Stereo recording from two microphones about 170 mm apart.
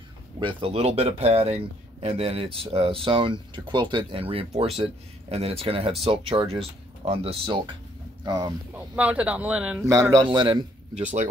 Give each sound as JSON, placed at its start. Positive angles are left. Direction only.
{"t": 0.4, "sound": "speech", "side_deg": -30}
{"t": 8.7, "sound": "speech", "side_deg": -10}
{"t": 9.8, "sound": "a man's voice", "side_deg": -20}
{"t": 10.3, "sound": "a man's voice", "side_deg": -30}
{"t": 11.0, "sound": "speech", "side_deg": -45}